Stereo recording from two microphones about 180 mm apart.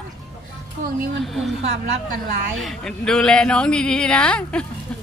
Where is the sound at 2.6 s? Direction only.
Centre (ahead or behind).